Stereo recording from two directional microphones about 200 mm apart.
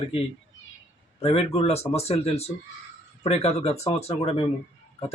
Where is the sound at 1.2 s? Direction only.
30° left (ahead or behind).